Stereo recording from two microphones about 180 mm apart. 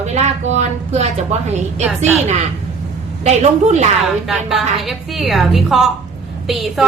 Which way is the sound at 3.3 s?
40° right (ahead or behind).